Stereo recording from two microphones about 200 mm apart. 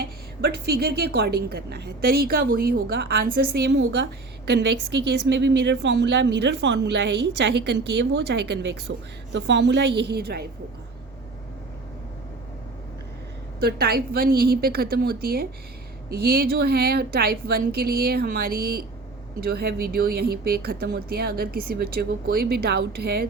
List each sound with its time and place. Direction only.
0.6 s a woman's voice: 50° right (ahead or behind)
13.6 s speech: 50° right (ahead or behind)